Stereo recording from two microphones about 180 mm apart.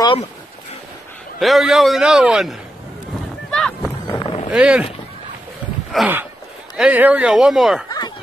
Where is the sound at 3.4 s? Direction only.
5° left (ahead or behind).